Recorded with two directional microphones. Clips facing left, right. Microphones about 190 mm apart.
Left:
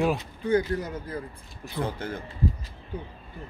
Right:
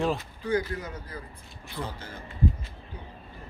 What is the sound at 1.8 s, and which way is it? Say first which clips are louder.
Speech: left 7 dB; 55° left (ahead or behind).